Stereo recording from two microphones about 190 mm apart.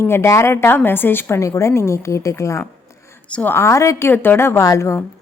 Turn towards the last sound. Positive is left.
turn(degrees=15)  # may be behind; listen again after turning